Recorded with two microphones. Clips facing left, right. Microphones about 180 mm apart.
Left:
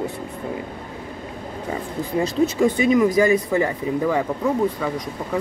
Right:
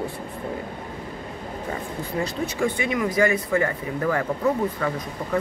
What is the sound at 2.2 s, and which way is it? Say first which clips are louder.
Speech: left 7 dB; 20° left (ahead or behind).